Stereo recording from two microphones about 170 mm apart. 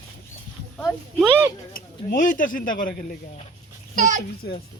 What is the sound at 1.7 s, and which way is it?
Speech, 50° left (ahead or behind).